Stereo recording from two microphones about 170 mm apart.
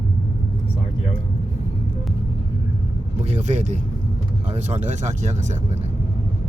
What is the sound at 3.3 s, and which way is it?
Speech, 45° right (ahead or behind).